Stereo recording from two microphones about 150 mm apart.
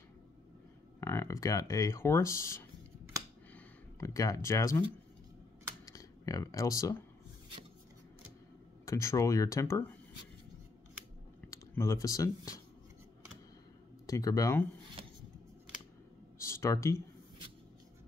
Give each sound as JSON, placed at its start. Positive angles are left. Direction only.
{"t": 1.0, "sound": "speech", "side_deg": 20}
{"t": 4.0, "sound": "speech", "side_deg": 20}
{"t": 5.9, "sound": "speech", "side_deg": 25}
{"t": 8.8, "sound": "speech", "side_deg": 20}
{"t": 11.5, "sound": "speech", "side_deg": 20}
{"t": 14.0, "sound": "speech", "side_deg": 20}
{"t": 16.3, "sound": "a sound", "side_deg": 20}